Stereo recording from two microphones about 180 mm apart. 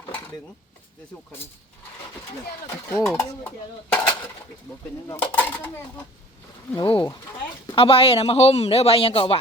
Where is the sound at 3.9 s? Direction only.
10° left (ahead or behind).